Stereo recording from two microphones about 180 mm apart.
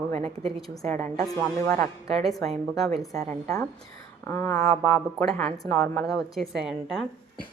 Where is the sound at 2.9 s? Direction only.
20° left (ahead or behind).